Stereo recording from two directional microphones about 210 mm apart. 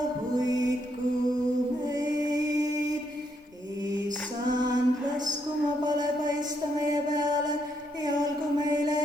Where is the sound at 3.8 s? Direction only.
20° right (ahead or behind).